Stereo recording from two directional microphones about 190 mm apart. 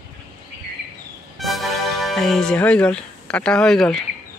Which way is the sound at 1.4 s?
Centre (ahead or behind).